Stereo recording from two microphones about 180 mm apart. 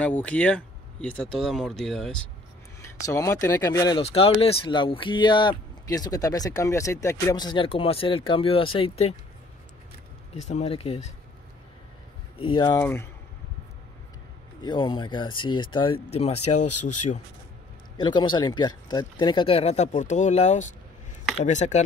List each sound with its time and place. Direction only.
0.0 s speech: 5° left (ahead or behind)
2.8 s speech: 15° left (ahead or behind)
4.0 s speech: 30° left (ahead or behind)
10.3 s speech: 40° left (ahead or behind)
12.4 s speech: 25° left (ahead or behind)
12.8 s speech: 15° left (ahead or behind)
14.6 s speech: 25° left (ahead or behind); by 17.2 s 40° left (ahead or behind)
17.9 s speech: 25° left (ahead or behind); by 21.8 s 40° left (ahead or behind)